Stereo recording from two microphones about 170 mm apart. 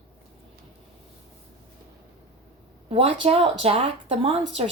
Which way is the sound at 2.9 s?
35° right (ahead or behind).